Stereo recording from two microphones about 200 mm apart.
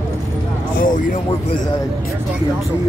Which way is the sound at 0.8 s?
40° left (ahead or behind).